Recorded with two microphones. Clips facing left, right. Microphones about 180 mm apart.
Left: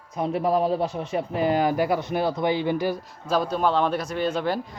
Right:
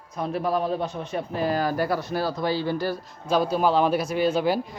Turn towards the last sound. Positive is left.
turn(degrees=-5)  # may be behind; listen again after turning